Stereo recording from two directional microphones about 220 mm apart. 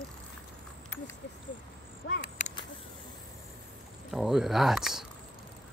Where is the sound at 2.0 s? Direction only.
60° left (ahead or behind).